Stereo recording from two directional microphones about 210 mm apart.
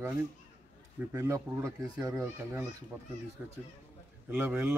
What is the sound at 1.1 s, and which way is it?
Speech, 15° right (ahead or behind).